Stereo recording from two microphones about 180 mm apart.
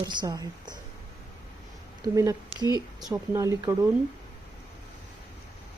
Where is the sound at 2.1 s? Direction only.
15° right (ahead or behind).